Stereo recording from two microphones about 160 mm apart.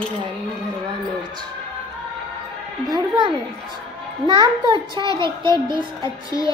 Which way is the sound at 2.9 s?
30° right (ahead or behind).